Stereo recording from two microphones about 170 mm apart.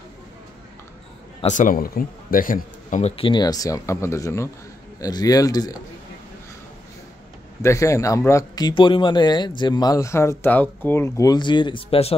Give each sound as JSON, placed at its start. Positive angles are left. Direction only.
{"t": 1.4, "sound": "speech", "side_deg": 50}
{"t": 7.6, "sound": "speech", "side_deg": 15}